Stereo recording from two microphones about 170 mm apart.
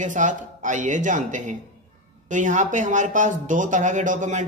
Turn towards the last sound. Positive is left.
turn(degrees=-45)  # may be behind; listen again after turning